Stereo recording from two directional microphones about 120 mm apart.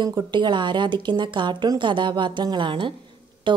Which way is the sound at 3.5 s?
40° right (ahead or behind).